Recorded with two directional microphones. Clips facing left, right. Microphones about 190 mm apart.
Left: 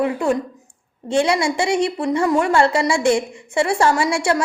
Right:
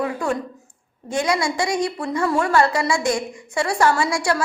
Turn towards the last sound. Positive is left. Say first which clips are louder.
# left 3 dB
turn(degrees=25)  # may be behind; listen again after turning